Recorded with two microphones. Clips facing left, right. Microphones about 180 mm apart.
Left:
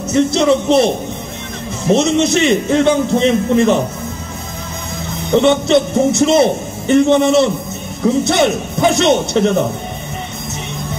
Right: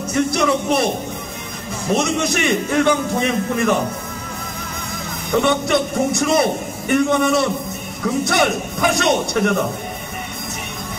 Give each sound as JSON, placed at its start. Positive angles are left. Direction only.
{"t": 0.1, "sound": "a man's voice", "side_deg": 25}
{"t": 2.0, "sound": "a man's voice", "side_deg": 25}
{"t": 5.3, "sound": "a man's voice", "side_deg": 25}